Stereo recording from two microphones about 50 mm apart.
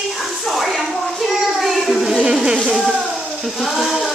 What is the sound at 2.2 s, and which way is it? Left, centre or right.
Speech, centre.